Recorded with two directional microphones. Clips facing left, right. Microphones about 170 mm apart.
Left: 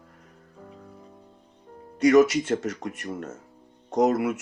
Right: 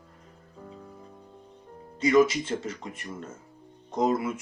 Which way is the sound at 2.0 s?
75° left (ahead or behind).